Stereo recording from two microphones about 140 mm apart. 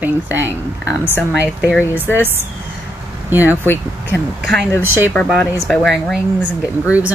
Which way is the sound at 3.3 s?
15° right (ahead or behind).